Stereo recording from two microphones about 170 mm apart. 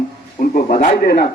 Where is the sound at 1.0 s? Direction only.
65° left (ahead or behind).